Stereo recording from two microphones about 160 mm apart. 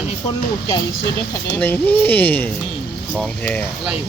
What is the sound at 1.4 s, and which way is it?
Speech, 10° left (ahead or behind).